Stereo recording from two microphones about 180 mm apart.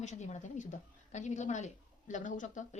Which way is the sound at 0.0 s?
40° left (ahead or behind).